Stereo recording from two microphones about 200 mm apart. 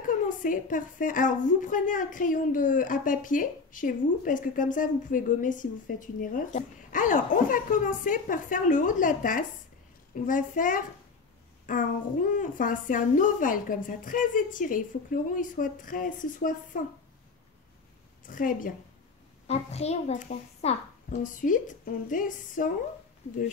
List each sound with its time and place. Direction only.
0.0 s a woman's voice: 40° left (ahead or behind)
18.3 s a woman's voice: 45° left (ahead or behind)
19.4 s a woman's voice: 30° left (ahead or behind)